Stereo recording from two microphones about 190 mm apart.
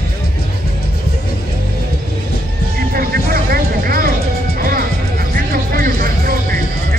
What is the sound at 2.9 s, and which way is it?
Vehicle, 50° right (ahead or behind).